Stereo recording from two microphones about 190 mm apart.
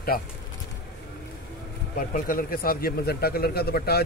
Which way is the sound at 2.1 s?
45° left (ahead or behind).